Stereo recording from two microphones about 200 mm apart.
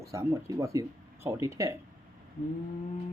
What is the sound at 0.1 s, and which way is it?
Speech, 15° right (ahead or behind).